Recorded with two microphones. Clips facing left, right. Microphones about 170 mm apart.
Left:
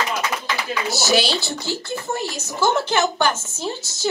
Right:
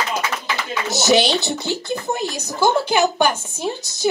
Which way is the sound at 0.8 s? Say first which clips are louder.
Right 4 dB; 20° right (ahead or behind).